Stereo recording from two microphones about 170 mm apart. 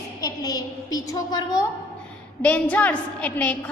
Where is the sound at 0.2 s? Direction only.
20° left (ahead or behind).